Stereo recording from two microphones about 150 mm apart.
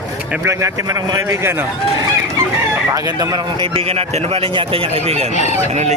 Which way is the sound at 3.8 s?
40° right (ahead or behind).